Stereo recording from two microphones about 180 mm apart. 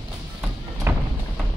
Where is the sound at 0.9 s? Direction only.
15° right (ahead or behind).